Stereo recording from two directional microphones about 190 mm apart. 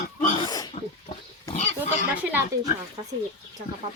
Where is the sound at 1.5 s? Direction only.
35° left (ahead or behind).